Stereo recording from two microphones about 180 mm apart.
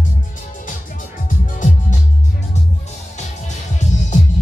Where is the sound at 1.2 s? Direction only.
45° left (ahead or behind).